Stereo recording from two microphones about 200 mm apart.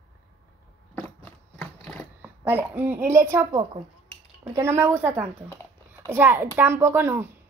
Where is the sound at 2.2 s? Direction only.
10° right (ahead or behind).